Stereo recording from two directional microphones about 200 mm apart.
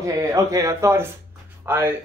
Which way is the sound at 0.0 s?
15° right (ahead or behind).